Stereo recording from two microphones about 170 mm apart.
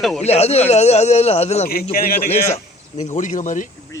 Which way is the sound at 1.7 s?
60° left (ahead or behind).